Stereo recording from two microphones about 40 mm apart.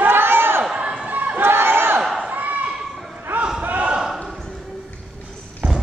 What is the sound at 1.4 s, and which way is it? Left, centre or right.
Crowd, right.